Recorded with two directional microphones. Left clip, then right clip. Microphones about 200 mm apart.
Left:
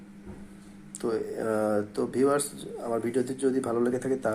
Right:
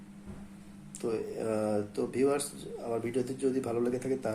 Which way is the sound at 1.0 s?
5° left (ahead or behind).